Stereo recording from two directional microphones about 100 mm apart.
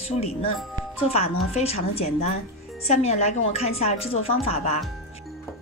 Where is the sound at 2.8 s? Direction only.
90° left.